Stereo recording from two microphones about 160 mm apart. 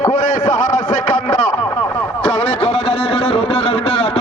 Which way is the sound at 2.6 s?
40° left (ahead or behind).